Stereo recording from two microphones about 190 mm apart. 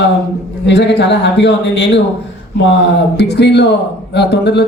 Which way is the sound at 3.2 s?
60° left (ahead or behind).